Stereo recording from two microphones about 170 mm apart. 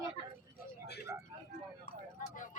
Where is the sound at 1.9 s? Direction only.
50° left (ahead or behind).